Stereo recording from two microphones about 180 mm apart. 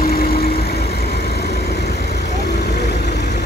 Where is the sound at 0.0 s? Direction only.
55° left (ahead or behind).